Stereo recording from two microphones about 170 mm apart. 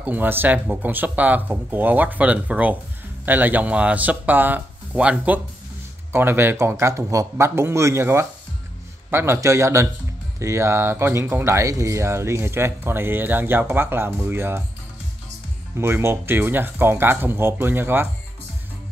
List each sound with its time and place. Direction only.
0.0 s speech: 10° right (ahead or behind)
15.8 s speech: 15° right (ahead or behind)